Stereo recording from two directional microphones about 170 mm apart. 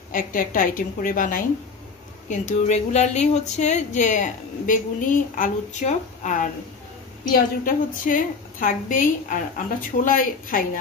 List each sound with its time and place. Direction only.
0.1 s speech: 55° left (ahead or behind)